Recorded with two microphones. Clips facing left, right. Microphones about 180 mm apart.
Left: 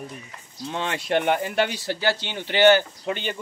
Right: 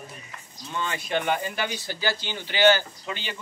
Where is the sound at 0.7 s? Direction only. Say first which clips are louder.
Left 4 dB; 80° left.